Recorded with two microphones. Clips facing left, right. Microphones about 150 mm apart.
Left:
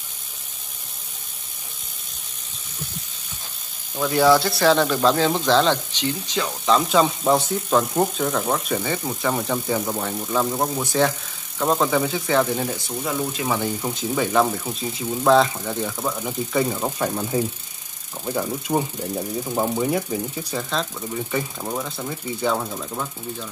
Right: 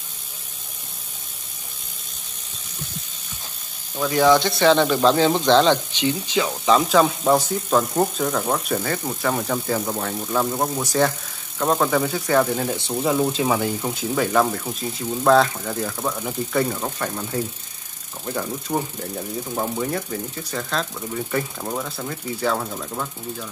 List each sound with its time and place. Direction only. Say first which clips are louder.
3.9 s speech: even; 5° left (ahead or behind)
12.7 s speech: right 5 dB; 25° right (ahead or behind)
13.5 s speech: right 2 dB; 5° right (ahead or behind)